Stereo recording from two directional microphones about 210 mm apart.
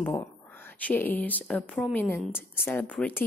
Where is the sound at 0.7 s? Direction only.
10° left (ahead or behind).